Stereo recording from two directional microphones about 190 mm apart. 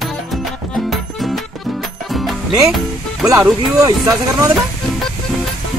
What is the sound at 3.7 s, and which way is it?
Speech, 20° right (ahead or behind).